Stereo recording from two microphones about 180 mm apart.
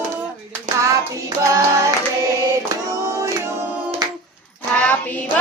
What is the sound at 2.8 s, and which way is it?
Music, 15° right (ahead or behind).